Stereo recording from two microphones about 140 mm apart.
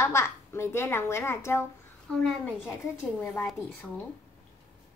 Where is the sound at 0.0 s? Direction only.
20° left (ahead or behind).